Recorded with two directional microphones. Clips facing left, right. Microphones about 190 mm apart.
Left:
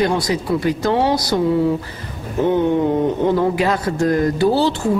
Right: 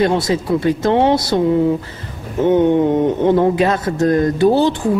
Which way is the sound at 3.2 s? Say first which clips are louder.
Right 5 dB; 20° right (ahead or behind).